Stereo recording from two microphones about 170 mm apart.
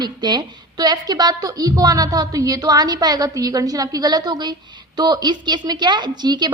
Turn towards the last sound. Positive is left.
turn(degrees=-25)  # may be behind; listen again after turning